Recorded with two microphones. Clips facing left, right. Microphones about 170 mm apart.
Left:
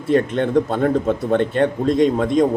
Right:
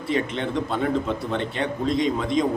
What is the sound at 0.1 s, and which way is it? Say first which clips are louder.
A man's voice: left 8 dB; 50° left (ahead or behind).